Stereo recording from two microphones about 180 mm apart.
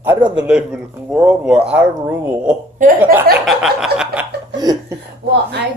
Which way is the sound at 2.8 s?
45° right (ahead or behind).